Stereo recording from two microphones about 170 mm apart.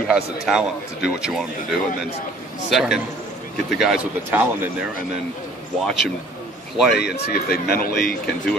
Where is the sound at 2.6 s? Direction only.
5° right (ahead or behind).